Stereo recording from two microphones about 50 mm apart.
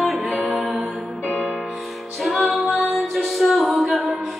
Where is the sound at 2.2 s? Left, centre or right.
Centre.